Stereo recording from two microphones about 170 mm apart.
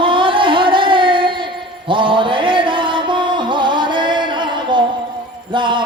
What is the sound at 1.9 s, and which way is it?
Mantra, 30° right (ahead or behind).